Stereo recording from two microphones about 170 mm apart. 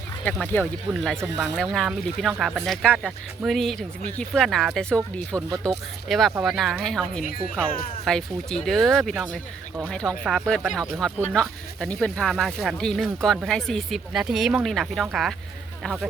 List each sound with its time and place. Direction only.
0.3 s speech: 10° left (ahead or behind)
7.3 s speech: 60° left (ahead or behind)
8.0 s speech: 5° left (ahead or behind)